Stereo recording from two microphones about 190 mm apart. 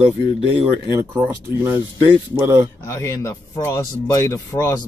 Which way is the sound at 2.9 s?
15° left (ahead or behind).